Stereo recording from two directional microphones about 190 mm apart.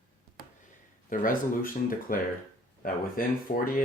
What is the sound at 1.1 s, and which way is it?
Speech, 45° left (ahead or behind).